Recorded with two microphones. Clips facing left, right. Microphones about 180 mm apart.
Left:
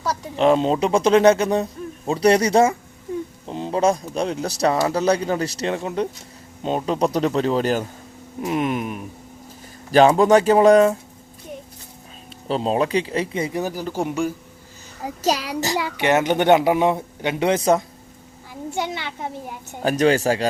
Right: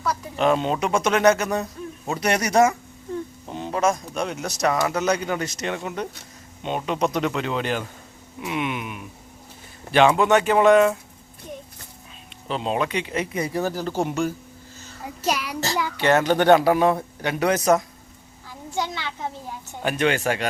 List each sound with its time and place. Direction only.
0.0 s speech: 35° left (ahead or behind)
12.5 s speech: 35° left (ahead or behind); by 14.3 s 10° left (ahead or behind)
15.3 s speech: 35° left (ahead or behind)
16.0 s speech: 15° left (ahead or behind)
18.8 s a child's voice: 20° left (ahead or behind)
19.8 s speech: 35° left (ahead or behind)